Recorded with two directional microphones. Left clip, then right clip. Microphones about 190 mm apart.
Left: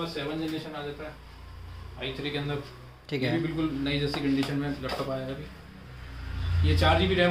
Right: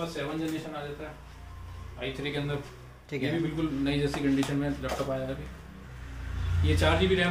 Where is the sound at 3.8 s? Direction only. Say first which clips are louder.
Right 3 dB; 5° left (ahead or behind).